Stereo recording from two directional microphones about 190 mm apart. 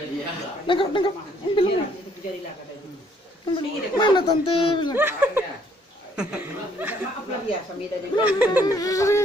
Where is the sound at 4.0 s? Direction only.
25° left (ahead or behind).